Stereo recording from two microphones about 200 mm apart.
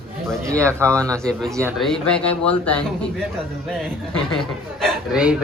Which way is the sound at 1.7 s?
Centre (ahead or behind).